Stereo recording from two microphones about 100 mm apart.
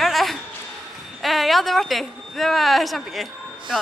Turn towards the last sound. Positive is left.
turn(degrees=0)  # may be behind; listen again after turning